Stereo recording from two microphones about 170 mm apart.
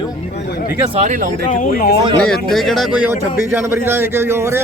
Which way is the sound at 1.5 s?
55° left (ahead or behind).